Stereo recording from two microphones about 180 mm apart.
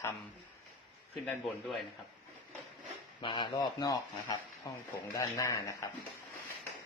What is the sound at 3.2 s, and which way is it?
A man's voice, 25° left (ahead or behind).